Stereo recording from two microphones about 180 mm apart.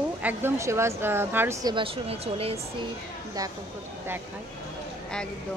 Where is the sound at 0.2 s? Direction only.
10° right (ahead or behind); by 2.6 s 35° right (ahead or behind).